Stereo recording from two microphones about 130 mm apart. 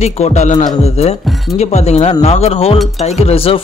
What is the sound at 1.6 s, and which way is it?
Speech, 60° left (ahead or behind).